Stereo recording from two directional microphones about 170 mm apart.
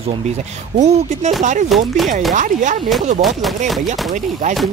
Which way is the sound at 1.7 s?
Centre (ahead or behind).